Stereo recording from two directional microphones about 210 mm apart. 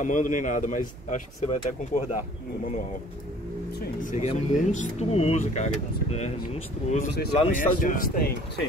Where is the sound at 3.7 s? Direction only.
45° left (ahead or behind).